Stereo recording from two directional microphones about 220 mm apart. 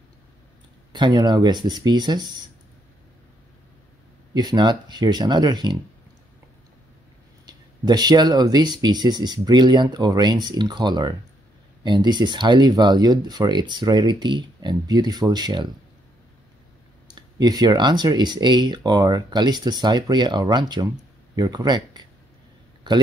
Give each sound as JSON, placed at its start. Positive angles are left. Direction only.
{"t": 0.9, "sound": "speech", "side_deg": -20}
{"t": 4.3, "sound": "speech", "side_deg": -20}
{"t": 7.4, "sound": "speech", "side_deg": -20}
{"t": 17.1, "sound": "speech", "side_deg": -20}